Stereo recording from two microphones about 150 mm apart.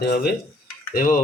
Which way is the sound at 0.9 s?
75° left (ahead or behind).